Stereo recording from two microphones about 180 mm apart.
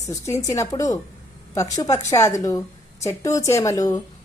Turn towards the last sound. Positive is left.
turn(degrees=20)  # may be behind; listen again after turning